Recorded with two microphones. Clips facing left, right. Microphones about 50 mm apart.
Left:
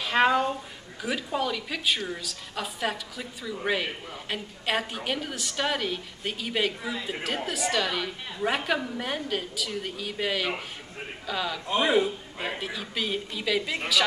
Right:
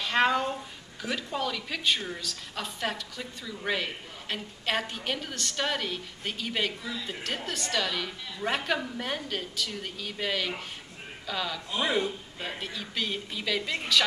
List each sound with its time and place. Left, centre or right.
0.0 s a woman's voice: centre
6.8 s speech: left
7.4 s a woman's voice: centre